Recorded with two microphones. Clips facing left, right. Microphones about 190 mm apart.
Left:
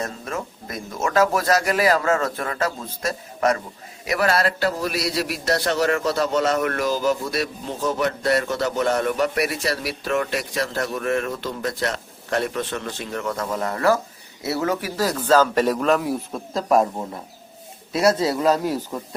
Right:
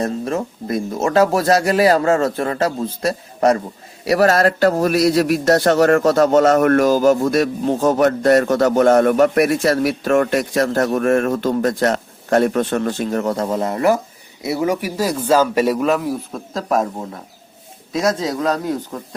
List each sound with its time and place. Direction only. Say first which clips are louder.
0.0 s a man's voice: right 8 dB; 30° right (ahead or behind); by 16.8 s centre (ahead or behind)
17.9 s speech: even; 5° left (ahead or behind)